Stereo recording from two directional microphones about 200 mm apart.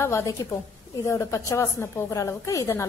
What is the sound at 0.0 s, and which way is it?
A woman's voice, 15° left (ahead or behind).